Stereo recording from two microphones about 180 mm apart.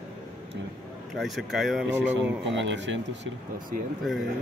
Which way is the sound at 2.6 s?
85° right.